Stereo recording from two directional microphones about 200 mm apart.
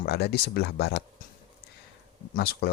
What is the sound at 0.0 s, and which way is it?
Speech, 55° left (ahead or behind).